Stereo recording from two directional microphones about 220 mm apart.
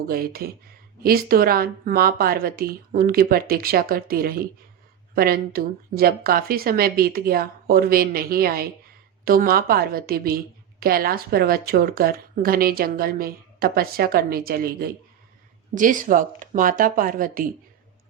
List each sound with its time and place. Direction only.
0.1 s a woman's voice: 40° right (ahead or behind)